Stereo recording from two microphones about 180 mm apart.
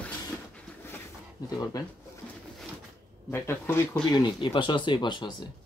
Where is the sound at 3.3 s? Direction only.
15° left (ahead or behind).